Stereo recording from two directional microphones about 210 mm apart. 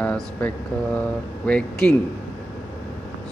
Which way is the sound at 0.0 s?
5° left (ahead or behind).